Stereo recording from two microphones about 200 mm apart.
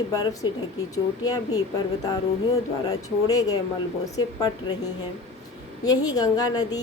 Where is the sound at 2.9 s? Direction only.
20° left (ahead or behind).